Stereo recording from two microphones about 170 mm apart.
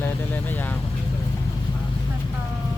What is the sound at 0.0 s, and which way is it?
Vehicle, 10° left (ahead or behind).